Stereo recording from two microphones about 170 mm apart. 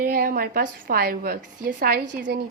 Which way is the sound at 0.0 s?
60° right (ahead or behind).